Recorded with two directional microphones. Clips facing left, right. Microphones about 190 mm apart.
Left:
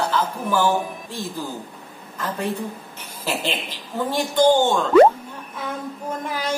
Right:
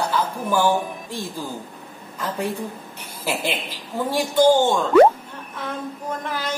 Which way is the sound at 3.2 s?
10° right (ahead or behind).